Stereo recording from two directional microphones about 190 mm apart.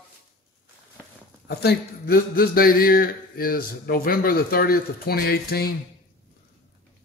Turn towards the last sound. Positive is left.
turn(degrees=55)  # may be behind; listen again after turning